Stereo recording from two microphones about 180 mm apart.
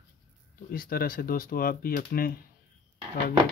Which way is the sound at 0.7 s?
55° left (ahead or behind).